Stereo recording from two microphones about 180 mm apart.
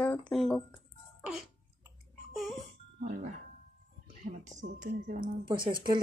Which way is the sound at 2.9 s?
45° right (ahead or behind).